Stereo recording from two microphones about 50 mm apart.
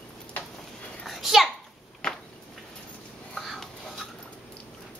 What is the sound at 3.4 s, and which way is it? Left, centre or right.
Writing, centre.